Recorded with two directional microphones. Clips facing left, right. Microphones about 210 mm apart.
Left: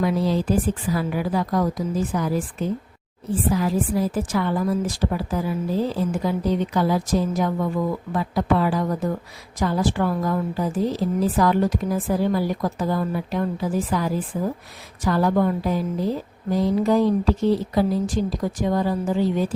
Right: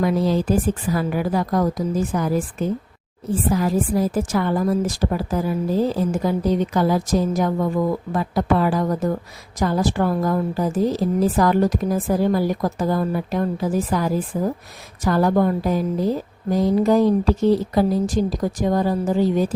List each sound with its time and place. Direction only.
0.0 s a woman's voice: 45° right (ahead or behind)